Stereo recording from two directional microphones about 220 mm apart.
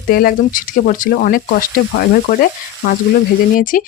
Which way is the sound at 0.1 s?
40° left (ahead or behind).